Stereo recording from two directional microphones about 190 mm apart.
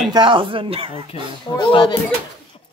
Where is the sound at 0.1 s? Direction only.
25° right (ahead or behind).